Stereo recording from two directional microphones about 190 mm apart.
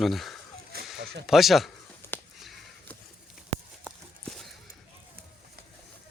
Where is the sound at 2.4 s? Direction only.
Centre (ahead or behind).